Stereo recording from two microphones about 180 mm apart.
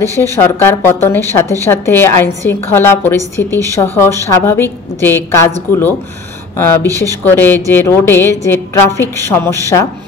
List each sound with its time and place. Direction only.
0.0 s a woman's voice: 15° left (ahead or behind)
3.4 s speech: 20° right (ahead or behind)
3.7 s a woman's voice: 10° left (ahead or behind)
6.5 s a woman's voice: 15° left (ahead or behind)